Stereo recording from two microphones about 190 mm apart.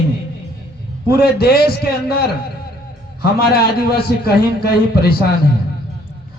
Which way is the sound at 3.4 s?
55° left (ahead or behind).